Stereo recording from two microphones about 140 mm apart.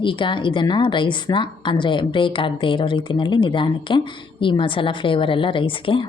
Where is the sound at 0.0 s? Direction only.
35° left (ahead or behind).